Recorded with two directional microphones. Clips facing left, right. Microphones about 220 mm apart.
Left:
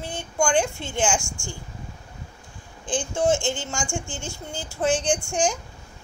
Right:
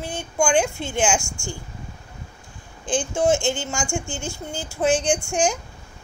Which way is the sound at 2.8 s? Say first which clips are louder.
Right 2 dB; 15° right (ahead or behind).